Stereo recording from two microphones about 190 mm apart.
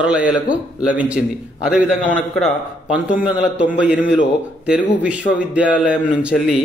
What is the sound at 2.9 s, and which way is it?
A man's voice, 5° right (ahead or behind).